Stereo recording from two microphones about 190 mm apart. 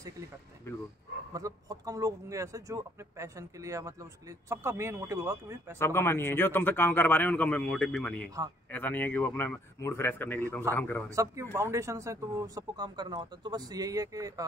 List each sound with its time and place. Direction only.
0.7 s a man's voice: 15° left (ahead or behind)
1.3 s speech: 20° right (ahead or behind)
5.8 s a man's voice: 10° left (ahead or behind)
11.1 s speech: 15° right (ahead or behind)